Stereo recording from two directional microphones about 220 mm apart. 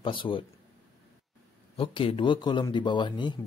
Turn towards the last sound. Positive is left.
turn(degrees=20)  # may be behind; listen again after turning